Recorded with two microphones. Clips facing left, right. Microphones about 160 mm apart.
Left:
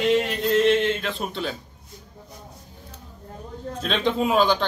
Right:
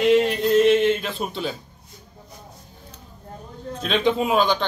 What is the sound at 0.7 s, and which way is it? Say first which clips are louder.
Speech: right 3 dB; 10° right (ahead or behind).